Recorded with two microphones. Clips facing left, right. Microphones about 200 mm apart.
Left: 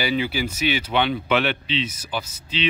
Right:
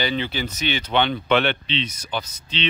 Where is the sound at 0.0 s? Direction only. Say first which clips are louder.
Left 1 dB; 10° left (ahead or behind).